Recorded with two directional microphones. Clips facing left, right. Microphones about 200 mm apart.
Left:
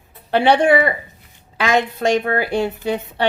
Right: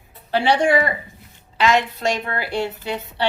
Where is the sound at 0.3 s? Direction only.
60° left (ahead or behind).